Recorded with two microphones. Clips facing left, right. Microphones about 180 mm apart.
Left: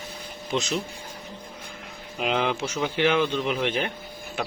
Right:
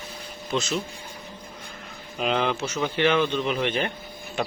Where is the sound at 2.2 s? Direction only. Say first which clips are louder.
Right 1 dB; 10° left (ahead or behind).